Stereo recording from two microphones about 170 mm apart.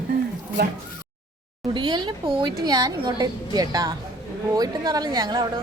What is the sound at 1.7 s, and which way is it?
Speech, 25° right (ahead or behind).